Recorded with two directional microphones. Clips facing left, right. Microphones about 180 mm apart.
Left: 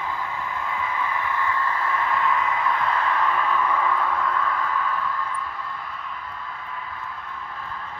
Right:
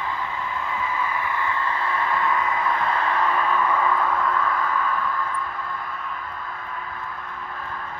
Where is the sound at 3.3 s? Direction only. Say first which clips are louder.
Right 1 dB; 50° right (ahead or behind).